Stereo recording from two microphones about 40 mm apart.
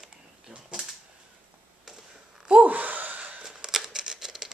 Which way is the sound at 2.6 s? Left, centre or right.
Right.